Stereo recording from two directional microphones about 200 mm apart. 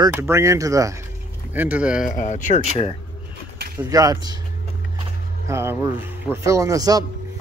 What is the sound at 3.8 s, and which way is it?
Speech, 15° right (ahead or behind).